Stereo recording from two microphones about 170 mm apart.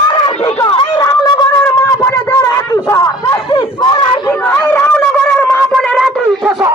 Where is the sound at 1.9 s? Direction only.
20° left (ahead or behind).